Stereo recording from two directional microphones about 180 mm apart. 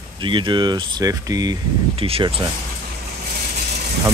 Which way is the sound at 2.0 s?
30° right (ahead or behind).